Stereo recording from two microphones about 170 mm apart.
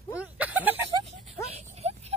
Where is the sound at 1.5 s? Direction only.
40° right (ahead or behind).